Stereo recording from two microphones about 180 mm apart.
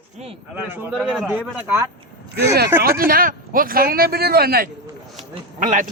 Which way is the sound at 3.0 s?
50° right (ahead or behind).